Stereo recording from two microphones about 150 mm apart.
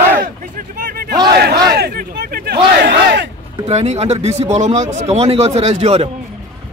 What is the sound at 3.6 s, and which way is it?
Speech, 45° right (ahead or behind).